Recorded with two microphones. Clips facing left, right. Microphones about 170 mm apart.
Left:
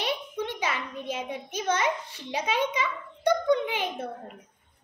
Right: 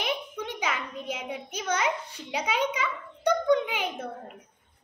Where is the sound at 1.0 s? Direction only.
15° right (ahead or behind).